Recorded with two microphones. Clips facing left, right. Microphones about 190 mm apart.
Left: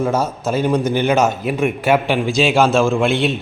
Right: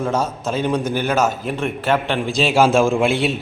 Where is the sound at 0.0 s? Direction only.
5° left (ahead or behind).